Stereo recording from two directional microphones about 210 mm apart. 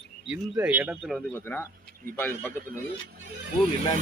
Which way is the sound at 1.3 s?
10° left (ahead or behind).